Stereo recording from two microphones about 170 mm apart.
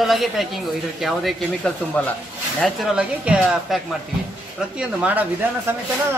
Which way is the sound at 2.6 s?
5° right (ahead or behind).